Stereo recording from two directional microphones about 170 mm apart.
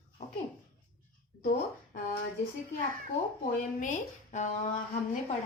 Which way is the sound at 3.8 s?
45° left (ahead or behind).